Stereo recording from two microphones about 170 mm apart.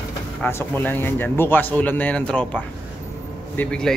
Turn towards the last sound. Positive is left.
turn(degrees=5)  # may be behind; listen again after turning